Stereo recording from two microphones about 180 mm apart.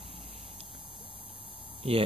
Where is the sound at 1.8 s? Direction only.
35° right (ahead or behind).